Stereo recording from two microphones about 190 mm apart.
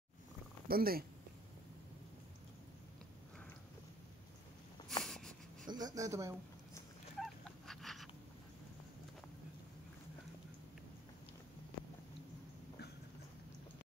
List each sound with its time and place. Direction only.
0.7 s speech: 50° right (ahead or behind)
5.0 s wheeze: centre (ahead or behind)
5.7 s a sound: 20° right (ahead or behind)
7.2 s dog: centre (ahead or behind)